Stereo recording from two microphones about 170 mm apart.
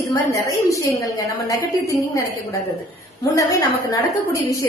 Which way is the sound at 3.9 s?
20° left (ahead or behind).